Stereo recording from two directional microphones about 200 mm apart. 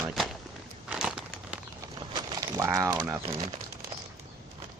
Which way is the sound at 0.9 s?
5° right (ahead or behind).